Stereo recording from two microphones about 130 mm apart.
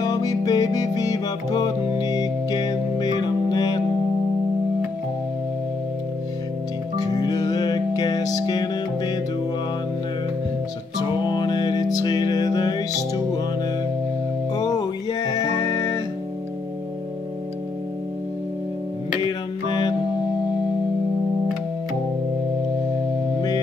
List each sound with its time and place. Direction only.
0.0 s music: 30° left (ahead or behind)
7.0 s music: 30° left (ahead or behind)
11.0 s music: 35° left (ahead or behind)
14.5 s music: 30° left (ahead or behind)
19.2 s music: 35° left (ahead or behind)